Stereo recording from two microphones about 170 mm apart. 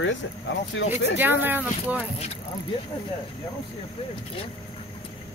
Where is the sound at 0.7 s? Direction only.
90° left.